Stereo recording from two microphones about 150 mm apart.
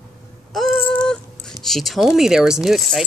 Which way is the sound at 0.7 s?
10° left (ahead or behind).